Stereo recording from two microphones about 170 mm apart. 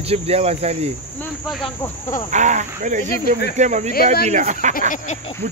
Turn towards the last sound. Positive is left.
turn(degrees=50)  # may be behind; listen again after turning